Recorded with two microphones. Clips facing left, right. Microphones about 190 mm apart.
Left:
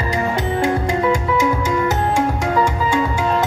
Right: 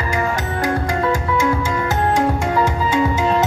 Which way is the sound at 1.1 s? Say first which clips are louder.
Left 1 dB; 10° left (ahead or behind).